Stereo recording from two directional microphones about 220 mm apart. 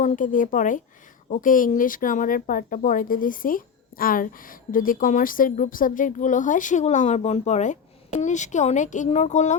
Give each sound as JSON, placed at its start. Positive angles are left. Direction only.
{"t": 0.0, "sound": "speech", "side_deg": 35}